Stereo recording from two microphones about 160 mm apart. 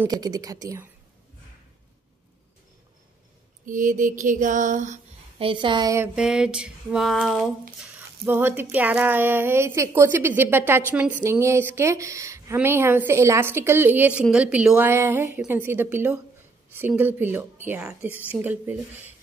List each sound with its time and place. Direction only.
0.1 s speech: 25° right (ahead or behind)
3.6 s mantra: 55° right (ahead or behind)
5.4 s a woman's voice: 30° right (ahead or behind)
6.1 s a sound: 5° right (ahead or behind)
8.3 s a woman's voice: 15° right (ahead or behind)